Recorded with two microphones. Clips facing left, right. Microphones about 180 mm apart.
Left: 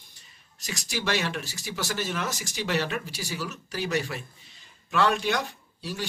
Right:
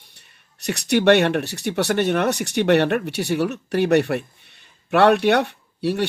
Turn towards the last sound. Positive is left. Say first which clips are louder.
# right 13 dB
turn(degrees=-65)  # may be behind; listen again after turning